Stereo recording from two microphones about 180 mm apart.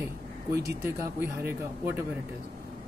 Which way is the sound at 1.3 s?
15° right (ahead or behind).